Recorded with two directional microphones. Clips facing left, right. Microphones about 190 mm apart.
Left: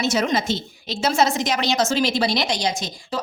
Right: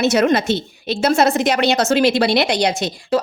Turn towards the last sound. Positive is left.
turn(degrees=-70)  # may be behind; listen again after turning